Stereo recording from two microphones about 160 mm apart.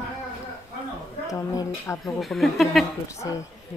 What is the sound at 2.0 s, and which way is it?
Speech, centre (ahead or behind).